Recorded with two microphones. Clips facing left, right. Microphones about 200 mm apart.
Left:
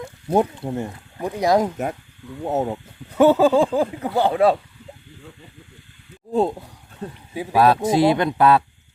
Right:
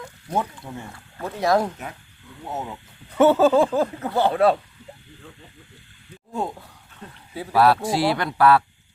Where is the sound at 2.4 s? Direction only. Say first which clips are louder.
Left 9 dB; 45° left (ahead or behind).